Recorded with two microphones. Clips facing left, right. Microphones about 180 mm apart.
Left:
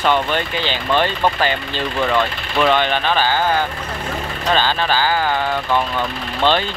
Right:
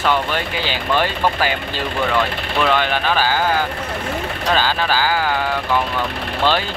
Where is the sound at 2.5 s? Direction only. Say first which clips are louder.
Left 2 dB; 5° right (ahead or behind).